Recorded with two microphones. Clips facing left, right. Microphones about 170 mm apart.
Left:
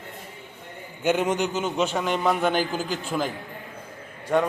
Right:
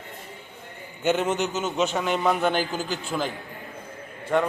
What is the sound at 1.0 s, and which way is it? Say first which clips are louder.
Speech: left 1 dB; 10° left (ahead or behind).